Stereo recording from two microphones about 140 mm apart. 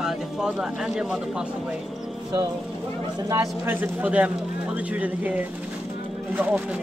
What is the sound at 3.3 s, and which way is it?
Speech, 15° right (ahead or behind).